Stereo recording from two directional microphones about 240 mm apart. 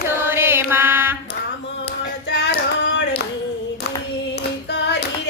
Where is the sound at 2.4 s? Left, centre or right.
Left.